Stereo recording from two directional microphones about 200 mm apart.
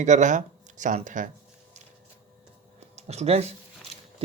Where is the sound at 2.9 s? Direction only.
30° right (ahead or behind).